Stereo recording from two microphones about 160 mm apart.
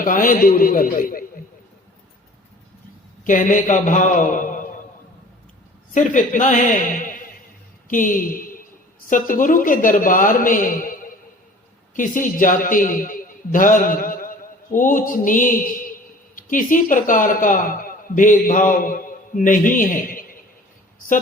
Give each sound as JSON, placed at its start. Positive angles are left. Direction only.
{"t": 0.0, "sound": "a man's voice", "side_deg": 60}
{"t": 3.2, "sound": "a man's voice", "side_deg": 55}
{"t": 5.9, "sound": "a woman's voice", "side_deg": 50}